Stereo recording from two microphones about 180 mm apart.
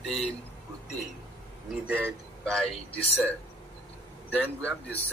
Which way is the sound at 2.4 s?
5° left (ahead or behind).